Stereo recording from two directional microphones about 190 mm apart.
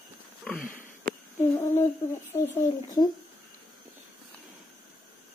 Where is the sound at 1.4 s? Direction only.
15° left (ahead or behind).